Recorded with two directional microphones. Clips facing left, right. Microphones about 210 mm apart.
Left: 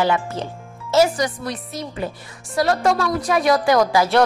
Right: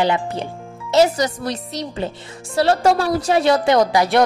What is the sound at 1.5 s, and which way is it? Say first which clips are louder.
Speech: right 3 dB; 80° right.